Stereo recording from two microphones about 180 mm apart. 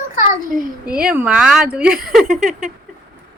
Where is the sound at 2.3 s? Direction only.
45° right (ahead or behind).